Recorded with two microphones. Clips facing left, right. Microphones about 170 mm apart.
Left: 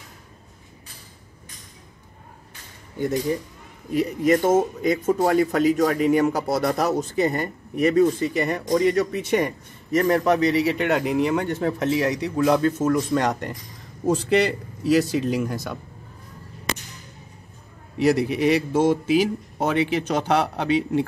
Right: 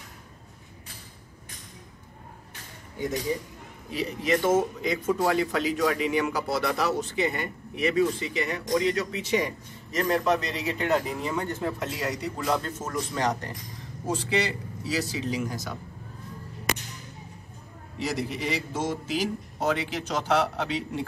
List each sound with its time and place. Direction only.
3.9 s a man's voice: 50° left (ahead or behind)
17.9 s a man's voice: 60° left (ahead or behind)